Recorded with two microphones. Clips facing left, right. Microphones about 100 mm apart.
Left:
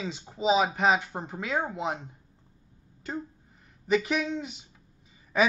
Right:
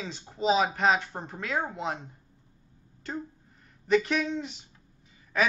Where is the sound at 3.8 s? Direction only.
5° left (ahead or behind).